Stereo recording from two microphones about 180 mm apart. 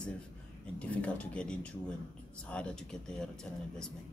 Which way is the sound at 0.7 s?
5° left (ahead or behind).